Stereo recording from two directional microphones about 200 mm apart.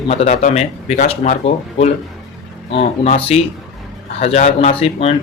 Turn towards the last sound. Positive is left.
turn(degrees=30)  # may be behind; listen again after turning